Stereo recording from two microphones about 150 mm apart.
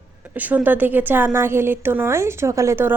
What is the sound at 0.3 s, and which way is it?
A woman's voice, 10° right (ahead or behind).